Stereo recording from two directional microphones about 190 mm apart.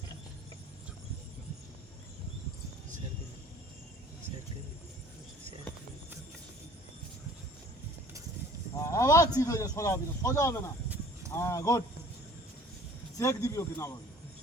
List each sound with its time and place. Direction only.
8.7 s a man's voice: 15° left (ahead or behind)
10.8 s a sound: 10° right (ahead or behind)
11.3 s speech: 15° left (ahead or behind)
13.1 s speech: 15° left (ahead or behind)